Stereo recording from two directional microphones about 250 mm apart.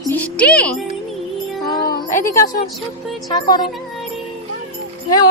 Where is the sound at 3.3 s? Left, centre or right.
Centre.